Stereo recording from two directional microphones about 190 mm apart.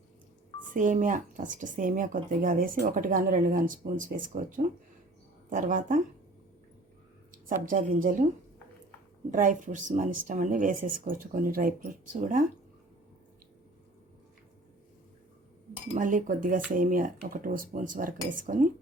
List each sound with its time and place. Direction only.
0.7 s speech: 45° right (ahead or behind)
7.3 s a woman's voice: 45° right (ahead or behind)
9.3 s speech: 45° right (ahead or behind)
15.9 s speech: 45° right (ahead or behind)